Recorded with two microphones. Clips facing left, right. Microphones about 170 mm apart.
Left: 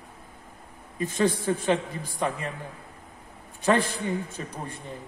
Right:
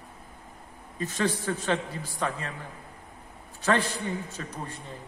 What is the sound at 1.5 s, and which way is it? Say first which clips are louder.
Speech: left 4 dB; 15° left (ahead or behind).